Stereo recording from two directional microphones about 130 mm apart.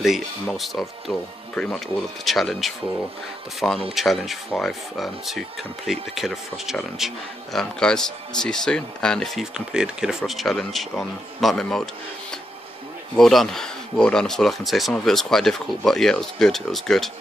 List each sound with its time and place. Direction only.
0.0 s speech: centre (ahead or behind)
13.1 s speech: centre (ahead or behind)